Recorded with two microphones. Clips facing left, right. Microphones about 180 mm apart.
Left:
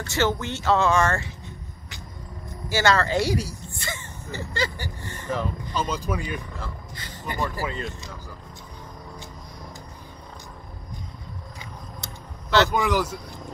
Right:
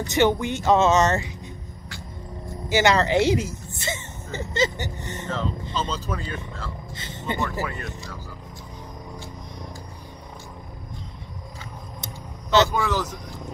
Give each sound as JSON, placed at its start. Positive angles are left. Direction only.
{"t": 0.0, "sound": "speech", "side_deg": -20}
{"t": 2.7, "sound": "speech", "side_deg": -20}
{"t": 5.8, "sound": "speech", "side_deg": 10}
{"t": 7.0, "sound": "speech", "side_deg": -25}
{"t": 7.6, "sound": "speech", "side_deg": 20}
{"t": 12.0, "sound": "vehicle", "side_deg": -20}
{"t": 12.6, "sound": "speech", "side_deg": 15}